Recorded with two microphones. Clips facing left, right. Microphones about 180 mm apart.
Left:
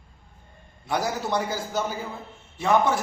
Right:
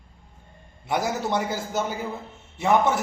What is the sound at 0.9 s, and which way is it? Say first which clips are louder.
A man's voice: right 1 dB; 25° right (ahead or behind).